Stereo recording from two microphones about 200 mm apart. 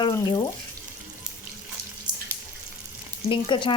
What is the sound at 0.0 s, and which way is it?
Speech, 20° left (ahead or behind).